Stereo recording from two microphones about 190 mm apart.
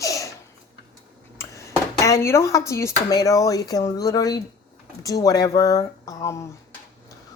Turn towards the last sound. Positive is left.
turn(degrees=15)  # may be behind; listen again after turning